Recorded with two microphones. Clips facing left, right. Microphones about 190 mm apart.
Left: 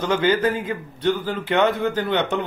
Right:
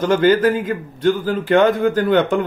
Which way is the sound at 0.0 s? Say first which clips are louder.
Right 5 dB; 45° right (ahead or behind).